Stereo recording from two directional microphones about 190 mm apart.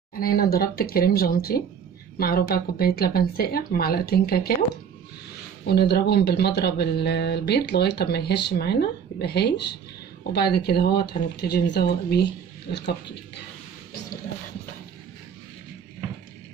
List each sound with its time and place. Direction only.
0.2 s speech: 50° left (ahead or behind)
5.7 s speech: 55° left (ahead or behind)